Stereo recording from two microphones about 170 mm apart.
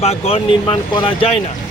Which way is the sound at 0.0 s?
35° left (ahead or behind).